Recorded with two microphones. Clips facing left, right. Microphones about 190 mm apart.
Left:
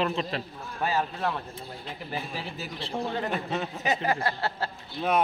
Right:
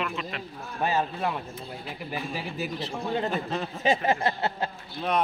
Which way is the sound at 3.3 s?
Centre (ahead or behind).